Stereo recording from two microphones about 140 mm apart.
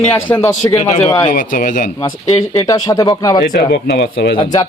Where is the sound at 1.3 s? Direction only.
70° left (ahead or behind).